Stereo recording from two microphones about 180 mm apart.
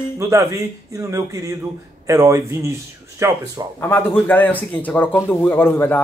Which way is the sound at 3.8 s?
10° left (ahead or behind).